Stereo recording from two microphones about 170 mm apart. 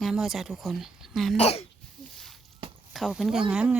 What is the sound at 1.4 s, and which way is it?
Speech, 35° left (ahead or behind).